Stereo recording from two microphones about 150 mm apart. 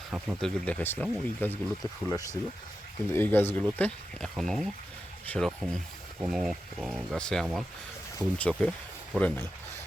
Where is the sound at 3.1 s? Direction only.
15° left (ahead or behind); by 7.1 s 5° right (ahead or behind).